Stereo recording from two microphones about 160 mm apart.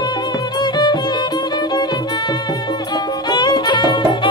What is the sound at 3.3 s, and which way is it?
Music, 25° left (ahead or behind).